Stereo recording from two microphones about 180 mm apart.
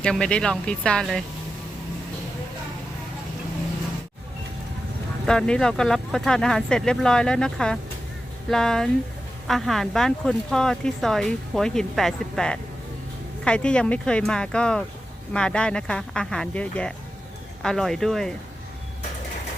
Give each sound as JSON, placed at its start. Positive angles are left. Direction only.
{"t": 0.0, "sound": "speech", "side_deg": 5}
{"t": 5.2, "sound": "speech", "side_deg": 5}